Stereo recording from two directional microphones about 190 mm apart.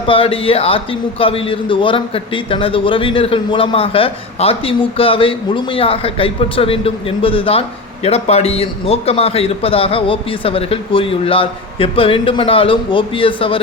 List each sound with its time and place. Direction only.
0.1 s a man's voice: 30° left (ahead or behind)